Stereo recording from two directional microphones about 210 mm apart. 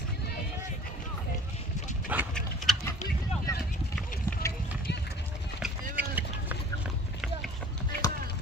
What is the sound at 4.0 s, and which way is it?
Horse, 5° left (ahead or behind).